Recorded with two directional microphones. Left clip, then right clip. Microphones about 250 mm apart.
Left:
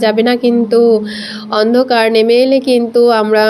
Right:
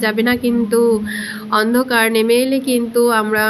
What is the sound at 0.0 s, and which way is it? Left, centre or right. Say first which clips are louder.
Speech: left 6 dB; centre.